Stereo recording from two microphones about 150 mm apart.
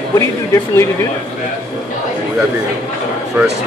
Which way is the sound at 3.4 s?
15° right (ahead or behind).